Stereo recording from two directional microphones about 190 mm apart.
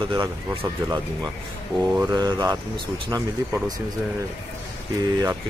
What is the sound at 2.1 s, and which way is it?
Speech, 20° right (ahead or behind).